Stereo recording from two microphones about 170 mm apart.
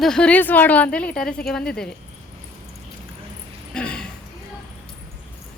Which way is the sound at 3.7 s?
5° left (ahead or behind).